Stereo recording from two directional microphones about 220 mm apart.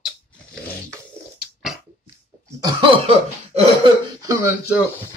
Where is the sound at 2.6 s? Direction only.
25° right (ahead or behind).